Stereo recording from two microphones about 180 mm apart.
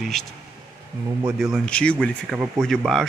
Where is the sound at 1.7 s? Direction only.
5° left (ahead or behind).